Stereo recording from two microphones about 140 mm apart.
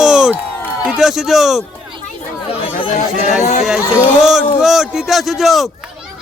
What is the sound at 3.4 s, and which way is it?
Speech, 55° left (ahead or behind).